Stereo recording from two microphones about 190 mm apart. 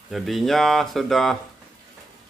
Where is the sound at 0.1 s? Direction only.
Centre (ahead or behind).